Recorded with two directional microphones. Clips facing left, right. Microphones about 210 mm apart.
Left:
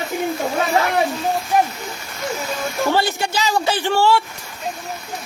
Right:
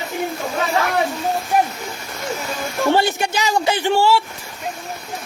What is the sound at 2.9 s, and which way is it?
Speech, 20° right (ahead or behind).